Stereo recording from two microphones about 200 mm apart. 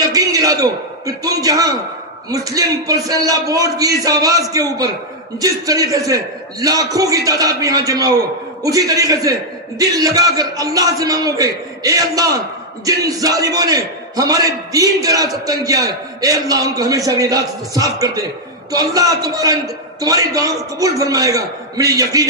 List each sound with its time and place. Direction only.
0.1 s a man's voice: 15° right (ahead or behind)